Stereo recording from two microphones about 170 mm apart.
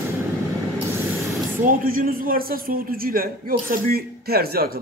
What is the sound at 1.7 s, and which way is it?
A man's voice, 55° right (ahead or behind).